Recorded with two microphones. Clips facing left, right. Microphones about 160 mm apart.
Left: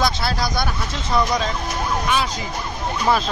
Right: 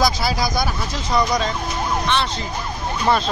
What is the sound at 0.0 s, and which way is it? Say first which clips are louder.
Speech: right 2 dB; 10° right (ahead or behind).